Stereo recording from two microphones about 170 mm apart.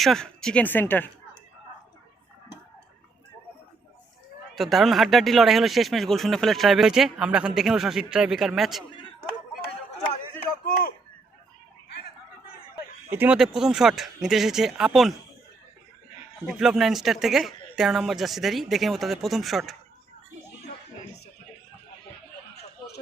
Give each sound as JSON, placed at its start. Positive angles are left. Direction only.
{"t": 0.0, "sound": "speech", "side_deg": 0}
{"t": 4.5, "sound": "speech", "side_deg": 0}
{"t": 10.7, "sound": "speech", "side_deg": 60}
{"t": 13.1, "sound": "speech", "side_deg": -10}
{"t": 16.5, "sound": "speech", "side_deg": -5}